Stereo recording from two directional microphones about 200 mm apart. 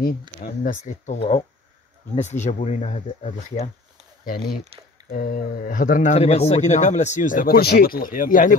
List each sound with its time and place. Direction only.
0.4 s speech: 40° left (ahead or behind)
5.1 s speech: 45° left (ahead or behind)